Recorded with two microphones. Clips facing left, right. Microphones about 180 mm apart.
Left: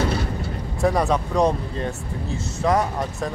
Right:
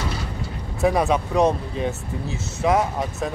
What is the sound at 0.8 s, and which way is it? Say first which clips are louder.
Speech: right 1 dB; 5° right (ahead or behind).